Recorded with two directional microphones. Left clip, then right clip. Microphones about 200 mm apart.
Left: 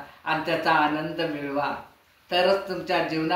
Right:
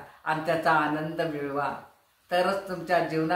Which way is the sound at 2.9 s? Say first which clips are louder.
Right 1 dB; 20° right (ahead or behind).